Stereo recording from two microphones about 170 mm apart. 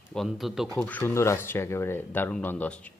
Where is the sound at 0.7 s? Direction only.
10° left (ahead or behind).